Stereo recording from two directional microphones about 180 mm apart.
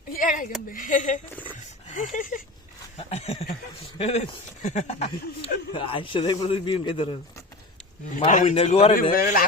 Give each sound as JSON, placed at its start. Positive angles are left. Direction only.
{"t": 0.1, "sound": "a sound", "side_deg": 45}
{"t": 0.7, "sound": "speech", "side_deg": 45}
{"t": 3.1, "sound": "a man's voice", "side_deg": 35}
{"t": 8.3, "sound": "speech", "side_deg": 45}
{"t": 8.5, "sound": "speech", "side_deg": 35}
{"t": 9.1, "sound": "speech", "side_deg": 55}